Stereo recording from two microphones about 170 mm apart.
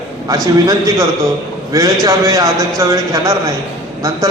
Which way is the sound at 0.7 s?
20° right (ahead or behind).